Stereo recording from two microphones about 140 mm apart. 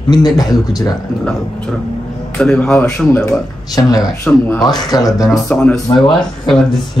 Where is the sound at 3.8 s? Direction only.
25° left (ahead or behind).